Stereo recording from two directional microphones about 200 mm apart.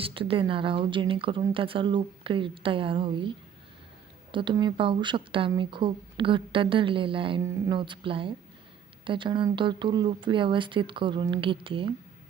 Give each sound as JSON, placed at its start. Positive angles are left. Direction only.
{"t": 0.0, "sound": "speech", "side_deg": -25}